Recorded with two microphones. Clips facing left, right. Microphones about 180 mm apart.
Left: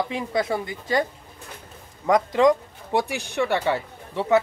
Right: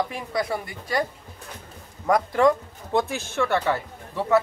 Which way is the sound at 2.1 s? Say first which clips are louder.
Left 1 dB; 20° left (ahead or behind).